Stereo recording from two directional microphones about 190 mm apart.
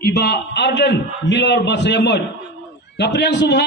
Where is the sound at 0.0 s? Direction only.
60° left (ahead or behind).